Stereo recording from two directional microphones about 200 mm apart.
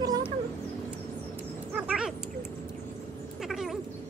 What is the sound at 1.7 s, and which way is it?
Owl, 5° right (ahead or behind).